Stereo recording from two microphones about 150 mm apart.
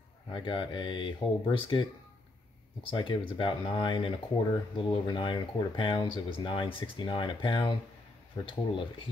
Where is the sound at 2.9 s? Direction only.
35° left (ahead or behind).